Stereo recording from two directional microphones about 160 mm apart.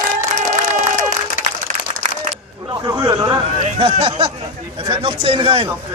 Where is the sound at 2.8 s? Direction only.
25° right (ahead or behind).